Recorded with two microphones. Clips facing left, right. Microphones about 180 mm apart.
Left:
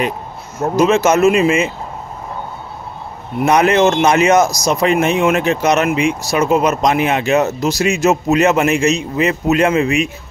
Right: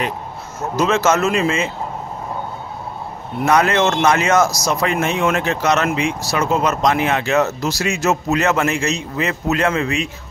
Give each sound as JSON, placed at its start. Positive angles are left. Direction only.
{"t": 0.7, "sound": "speech", "side_deg": 15}
{"t": 3.3, "sound": "speech", "side_deg": 20}